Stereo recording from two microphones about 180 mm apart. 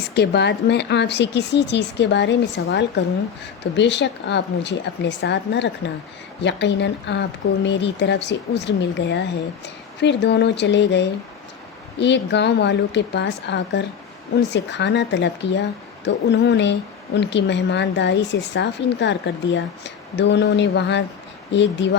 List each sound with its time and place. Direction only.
0.1 s a woman's voice: 70° left (ahead or behind)